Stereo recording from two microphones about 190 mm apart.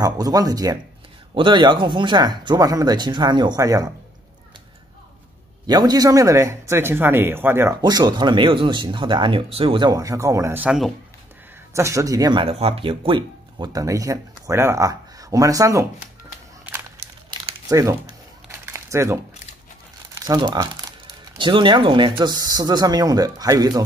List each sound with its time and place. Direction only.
0.0 s speech: 20° right (ahead or behind)
5.7 s speech: 20° right (ahead or behind)
17.3 s crumpling: 20° right (ahead or behind)
20.2 s speech: 20° right (ahead or behind)